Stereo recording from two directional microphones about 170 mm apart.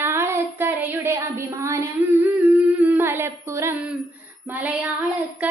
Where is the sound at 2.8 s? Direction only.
15° right (ahead or behind).